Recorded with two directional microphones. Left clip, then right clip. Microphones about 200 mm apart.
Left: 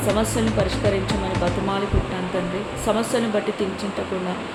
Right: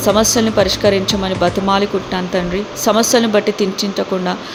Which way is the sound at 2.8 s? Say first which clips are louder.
Right 9 dB; 40° right (ahead or behind).